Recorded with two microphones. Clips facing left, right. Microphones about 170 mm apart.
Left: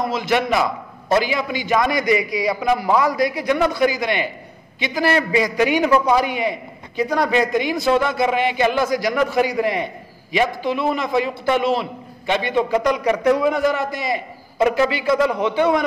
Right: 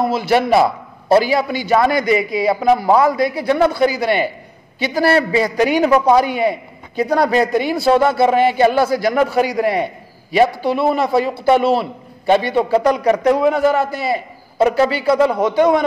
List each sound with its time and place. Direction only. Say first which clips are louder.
0.2 s a man's voice: right 6 dB; 35° right (ahead or behind)